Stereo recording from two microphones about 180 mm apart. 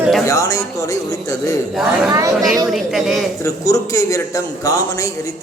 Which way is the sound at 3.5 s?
15° left (ahead or behind).